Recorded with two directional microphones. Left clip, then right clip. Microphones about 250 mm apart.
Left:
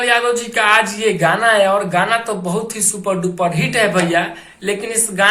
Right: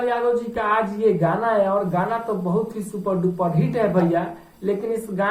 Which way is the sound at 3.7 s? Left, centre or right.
Left.